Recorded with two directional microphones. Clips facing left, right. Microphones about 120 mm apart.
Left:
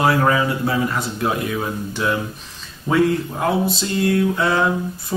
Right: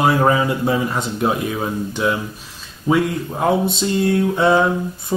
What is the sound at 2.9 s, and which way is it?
Speech, 5° right (ahead or behind).